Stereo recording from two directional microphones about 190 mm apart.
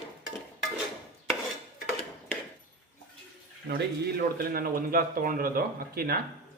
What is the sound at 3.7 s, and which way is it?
Speech, 50° right (ahead or behind).